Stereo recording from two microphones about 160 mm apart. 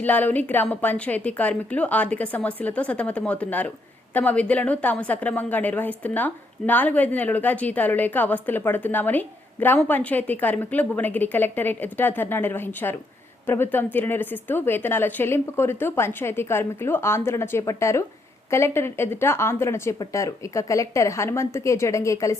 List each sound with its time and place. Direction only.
0.0 s a woman's voice: 10° left (ahead or behind)